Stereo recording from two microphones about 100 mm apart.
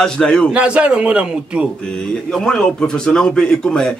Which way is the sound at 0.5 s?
10° right (ahead or behind).